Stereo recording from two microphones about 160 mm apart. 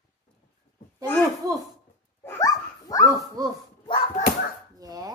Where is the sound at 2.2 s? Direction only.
20° left (ahead or behind).